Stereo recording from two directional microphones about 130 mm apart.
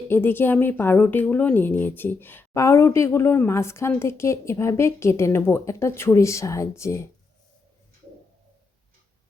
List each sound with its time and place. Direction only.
0.1 s a woman's voice: 15° left (ahead or behind)